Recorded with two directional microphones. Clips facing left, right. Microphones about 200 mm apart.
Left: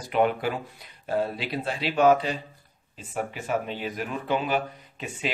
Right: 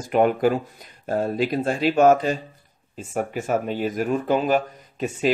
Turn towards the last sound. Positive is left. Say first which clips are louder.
# right 10 dB
turn(degrees=-45)  # may be behind; listen again after turning